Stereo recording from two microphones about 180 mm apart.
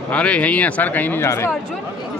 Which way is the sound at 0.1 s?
5° left (ahead or behind).